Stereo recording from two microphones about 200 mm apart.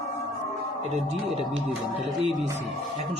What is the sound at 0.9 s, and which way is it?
Speech, 35° right (ahead or behind).